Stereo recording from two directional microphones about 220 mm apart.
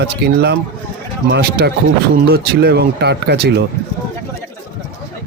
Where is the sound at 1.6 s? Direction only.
45° right (ahead or behind).